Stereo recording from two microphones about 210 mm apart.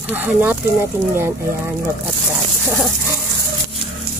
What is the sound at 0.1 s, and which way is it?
Speech, 10° right (ahead or behind).